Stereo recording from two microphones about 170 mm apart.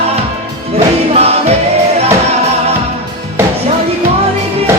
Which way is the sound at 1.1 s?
35° right (ahead or behind).